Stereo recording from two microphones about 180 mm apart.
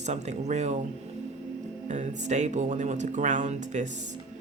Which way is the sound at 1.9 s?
40° right (ahead or behind).